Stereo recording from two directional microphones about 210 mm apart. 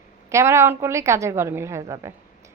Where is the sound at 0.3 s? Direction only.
15° right (ahead or behind).